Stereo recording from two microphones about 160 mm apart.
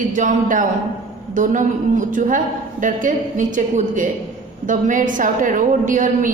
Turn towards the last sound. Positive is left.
turn(degrees=-55)  # may be behind; listen again after turning